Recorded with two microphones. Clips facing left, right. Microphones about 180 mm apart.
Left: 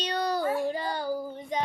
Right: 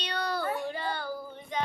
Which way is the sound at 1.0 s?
15° left (ahead or behind).